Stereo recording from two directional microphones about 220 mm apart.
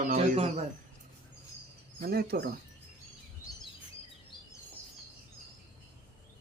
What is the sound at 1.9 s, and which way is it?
Speech, 45° right (ahead or behind).